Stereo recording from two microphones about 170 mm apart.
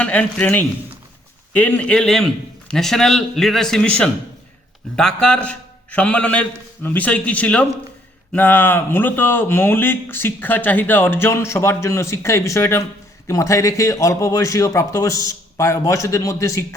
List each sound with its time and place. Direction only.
0.0 s a man's voice: 5° left (ahead or behind)